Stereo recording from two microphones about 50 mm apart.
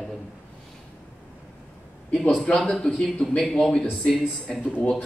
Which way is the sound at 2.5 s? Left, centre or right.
Centre.